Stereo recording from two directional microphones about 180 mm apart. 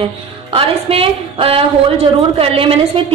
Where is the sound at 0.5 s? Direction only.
30° right (ahead or behind).